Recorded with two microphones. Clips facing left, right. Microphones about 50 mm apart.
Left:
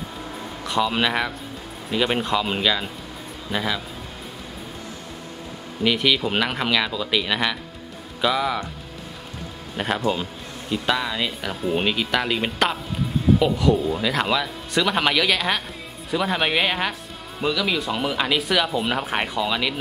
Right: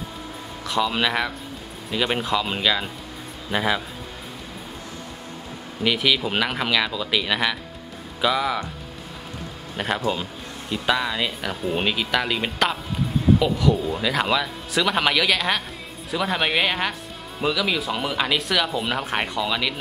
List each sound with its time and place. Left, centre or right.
0.7 s speech: centre
3.5 s speech: centre
5.9 s speech: centre
9.8 s speech: centre